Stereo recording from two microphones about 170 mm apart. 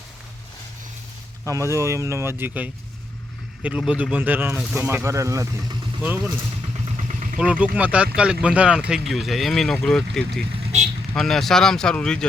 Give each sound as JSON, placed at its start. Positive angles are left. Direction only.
{"t": 1.5, "sound": "speech", "side_deg": -15}
{"t": 6.9, "sound": "vehicle", "side_deg": -50}
{"t": 7.8, "sound": "speech", "side_deg": -5}